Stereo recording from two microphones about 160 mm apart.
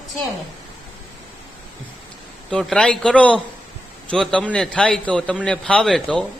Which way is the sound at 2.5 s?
5° left (ahead or behind).